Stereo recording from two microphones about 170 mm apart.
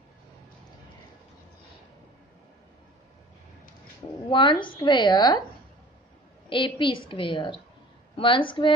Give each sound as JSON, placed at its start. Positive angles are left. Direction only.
{"t": 4.3, "sound": "a woman's voice", "side_deg": 30}
{"t": 6.5, "sound": "a woman's voice", "side_deg": 30}